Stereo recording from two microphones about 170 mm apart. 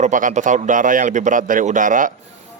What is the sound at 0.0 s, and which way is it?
Speech, 50° right (ahead or behind).